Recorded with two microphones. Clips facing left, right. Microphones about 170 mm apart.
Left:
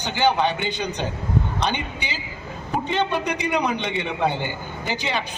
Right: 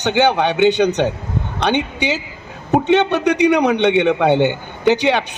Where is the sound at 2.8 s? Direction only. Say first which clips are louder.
Right 8 dB; 75° right (ahead or behind).